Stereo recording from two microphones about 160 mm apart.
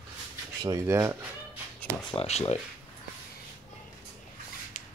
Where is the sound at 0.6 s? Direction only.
20° right (ahead or behind).